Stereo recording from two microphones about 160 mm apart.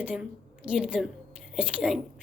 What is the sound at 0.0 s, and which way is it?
A woman's voice, 5° right (ahead or behind).